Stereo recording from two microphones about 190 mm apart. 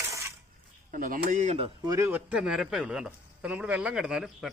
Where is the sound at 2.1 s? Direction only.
5° right (ahead or behind).